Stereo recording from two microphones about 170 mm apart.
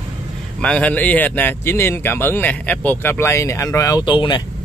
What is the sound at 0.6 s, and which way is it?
A man's voice, 5° left (ahead or behind).